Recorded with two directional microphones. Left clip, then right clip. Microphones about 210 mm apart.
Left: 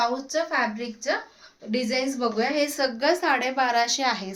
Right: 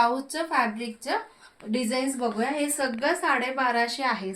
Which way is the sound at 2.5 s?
50° left (ahead or behind).